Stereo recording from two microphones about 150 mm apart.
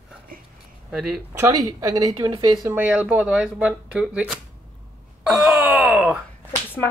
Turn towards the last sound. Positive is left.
turn(degrees=15)  # may be behind; listen again after turning